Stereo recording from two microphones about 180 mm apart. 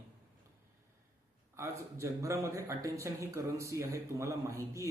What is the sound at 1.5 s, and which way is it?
Speech, 15° right (ahead or behind).